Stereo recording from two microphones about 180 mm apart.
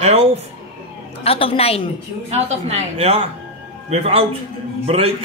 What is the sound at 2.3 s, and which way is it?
A man's voice, 40° right (ahead or behind).